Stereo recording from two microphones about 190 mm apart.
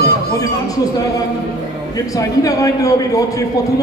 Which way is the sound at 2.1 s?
15° left (ahead or behind).